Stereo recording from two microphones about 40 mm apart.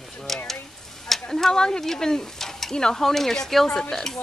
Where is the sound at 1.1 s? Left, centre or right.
Centre.